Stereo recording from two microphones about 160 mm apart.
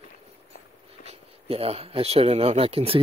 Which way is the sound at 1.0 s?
40° right (ahead or behind).